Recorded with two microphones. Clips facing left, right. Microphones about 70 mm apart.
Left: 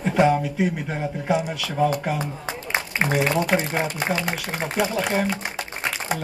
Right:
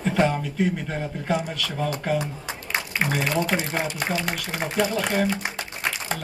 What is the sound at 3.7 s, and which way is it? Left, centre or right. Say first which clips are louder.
Speech: left 2 dB; centre.